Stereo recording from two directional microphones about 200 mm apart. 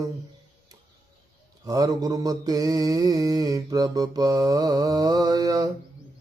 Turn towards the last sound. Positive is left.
turn(degrees=-20)  # may be behind; listen again after turning